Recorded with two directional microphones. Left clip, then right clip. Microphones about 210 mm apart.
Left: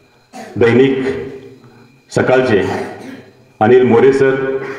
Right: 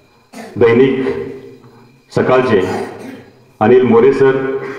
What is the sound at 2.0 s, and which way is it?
Speech, 45° left (ahead or behind).